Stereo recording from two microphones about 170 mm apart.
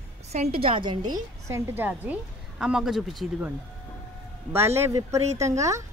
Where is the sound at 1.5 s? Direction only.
10° right (ahead or behind).